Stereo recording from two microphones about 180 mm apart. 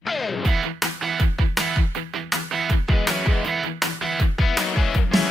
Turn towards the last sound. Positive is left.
turn(degrees=0)  # may be behind; listen again after turning